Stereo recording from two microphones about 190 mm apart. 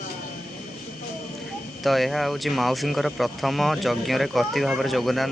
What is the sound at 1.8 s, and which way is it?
Speech, centre (ahead or behind).